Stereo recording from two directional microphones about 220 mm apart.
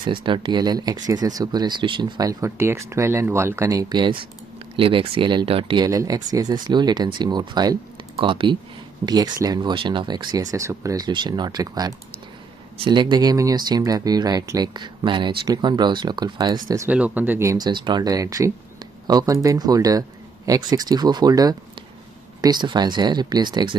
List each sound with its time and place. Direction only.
0.0 s speech: 20° right (ahead or behind)